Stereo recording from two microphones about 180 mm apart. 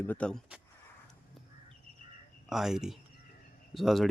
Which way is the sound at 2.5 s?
Centre (ahead or behind).